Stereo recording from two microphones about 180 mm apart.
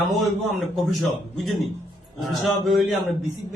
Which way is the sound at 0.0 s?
Centre (ahead or behind).